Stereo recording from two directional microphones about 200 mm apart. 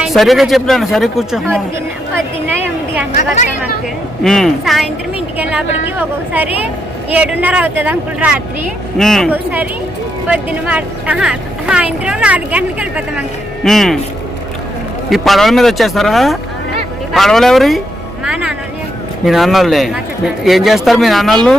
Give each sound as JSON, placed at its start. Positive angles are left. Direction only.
{"t": 0.0, "sound": "speech", "side_deg": 0}
{"t": 2.1, "sound": "a sound", "side_deg": -10}
{"t": 3.1, "sound": "chatter", "side_deg": 35}
{"t": 4.2, "sound": "speech", "side_deg": 0}
{"t": 15.1, "sound": "speech", "side_deg": 0}
{"t": 18.3, "sound": "music", "side_deg": -5}
{"t": 19.2, "sound": "speech", "side_deg": 0}